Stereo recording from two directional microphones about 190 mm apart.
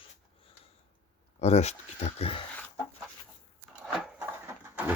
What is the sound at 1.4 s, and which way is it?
Speech, 35° left (ahead or behind).